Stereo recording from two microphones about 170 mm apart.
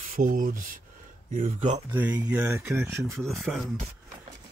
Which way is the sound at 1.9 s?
10° right (ahead or behind).